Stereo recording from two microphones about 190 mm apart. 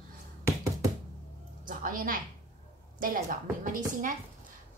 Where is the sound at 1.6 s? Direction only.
45° right (ahead or behind).